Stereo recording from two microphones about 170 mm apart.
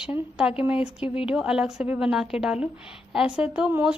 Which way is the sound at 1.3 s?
5° right (ahead or behind).